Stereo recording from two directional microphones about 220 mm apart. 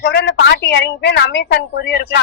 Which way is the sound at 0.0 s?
50° left (ahead or behind).